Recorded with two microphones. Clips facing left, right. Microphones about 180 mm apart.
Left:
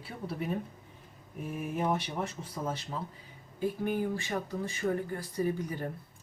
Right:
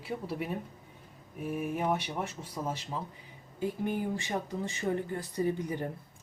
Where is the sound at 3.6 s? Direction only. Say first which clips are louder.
Left 1 dB; 15° right (ahead or behind).